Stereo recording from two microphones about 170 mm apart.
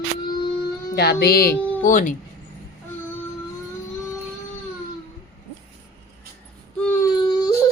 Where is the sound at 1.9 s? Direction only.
50° left (ahead or behind).